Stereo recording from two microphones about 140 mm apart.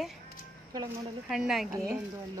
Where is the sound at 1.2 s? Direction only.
5° right (ahead or behind).